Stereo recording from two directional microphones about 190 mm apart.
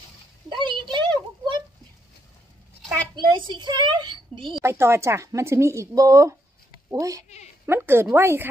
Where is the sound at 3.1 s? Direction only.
25° right (ahead or behind).